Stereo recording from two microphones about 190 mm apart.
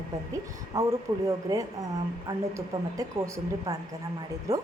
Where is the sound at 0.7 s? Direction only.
15° right (ahead or behind).